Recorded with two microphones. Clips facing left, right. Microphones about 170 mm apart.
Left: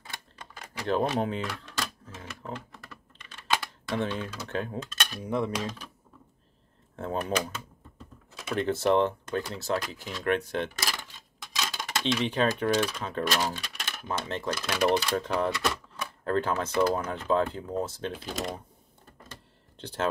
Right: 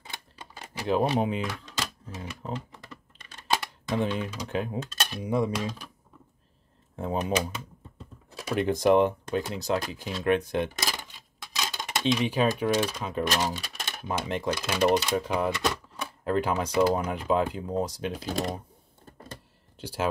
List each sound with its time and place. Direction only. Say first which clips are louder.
0.0 s typewriter: right 1 dB; 20° right (ahead or behind)
1.2 s speech: right 2 dB; 15° right (ahead or behind)
3.2 s typing: even; 40° right (ahead or behind)
3.9 s speech: right 2 dB; 15° right (ahead or behind)
7.0 s speech: right 2 dB; 15° right (ahead or behind)
11.5 s a sound: right 1 dB; 15° right (ahead or behind)
12.9 s speech: right 1 dB; 10° right (ahead or behind)
15.0 s speech: right 1 dB; 10° right (ahead or behind)
18.1 s speech: right 4 dB; 40° right (ahead or behind)
19.8 s speech: right 1 dB; 10° right (ahead or behind)